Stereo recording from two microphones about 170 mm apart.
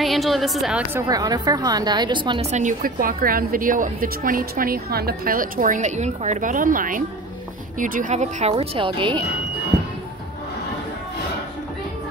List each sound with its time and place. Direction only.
0.0 s a woman's voice: centre (ahead or behind)
0.9 s a woman's voice: 20° right (ahead or behind)
2.5 s a woman's voice: 50° right (ahead or behind); by 9.2 s 30° right (ahead or behind)